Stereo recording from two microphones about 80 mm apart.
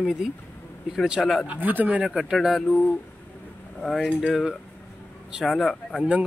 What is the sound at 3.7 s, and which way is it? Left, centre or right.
Speech, centre.